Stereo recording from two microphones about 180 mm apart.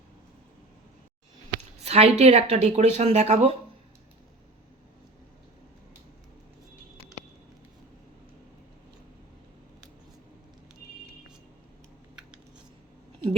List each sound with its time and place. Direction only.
1.8 s speech: 35° right (ahead or behind)